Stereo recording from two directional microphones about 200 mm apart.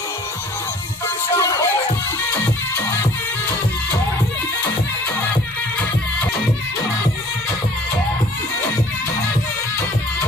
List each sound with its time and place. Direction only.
1.3 s music: 15° left (ahead or behind)